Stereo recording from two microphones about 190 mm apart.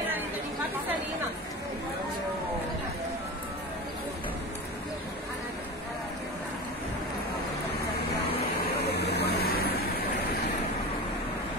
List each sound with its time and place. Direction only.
8.8 s vehicle: 60° left (ahead or behind)